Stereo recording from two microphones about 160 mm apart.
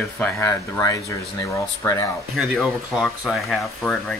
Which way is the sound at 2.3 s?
5° right (ahead or behind).